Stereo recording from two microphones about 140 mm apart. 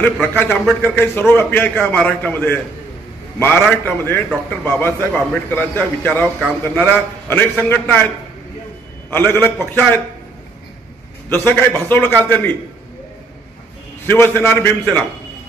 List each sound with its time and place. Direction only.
0.0 s a man's voice: 10° left (ahead or behind)
9.1 s a man's voice: 15° left (ahead or behind)
11.2 s a man's voice: 15° left (ahead or behind)
14.0 s a man's voice: 15° left (ahead or behind)